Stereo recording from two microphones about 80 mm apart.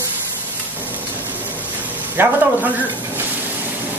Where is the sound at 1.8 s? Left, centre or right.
Right.